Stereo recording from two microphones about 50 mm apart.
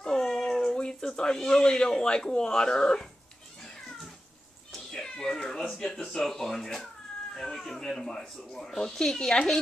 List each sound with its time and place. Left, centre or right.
0.0 s a sound: centre
0.7 s speech: centre
4.7 s cat: centre
6.0 s speech: centre